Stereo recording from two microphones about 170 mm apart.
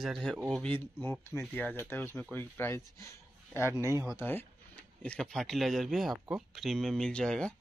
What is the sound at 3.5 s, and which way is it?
Speech, 15° right (ahead or behind).